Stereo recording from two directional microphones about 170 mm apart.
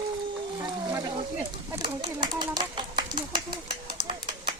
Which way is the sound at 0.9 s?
15° right (ahead or behind).